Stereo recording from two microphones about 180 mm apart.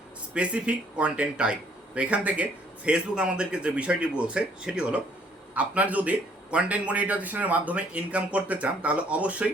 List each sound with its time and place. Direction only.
0.3 s a man's voice: 5° right (ahead or behind)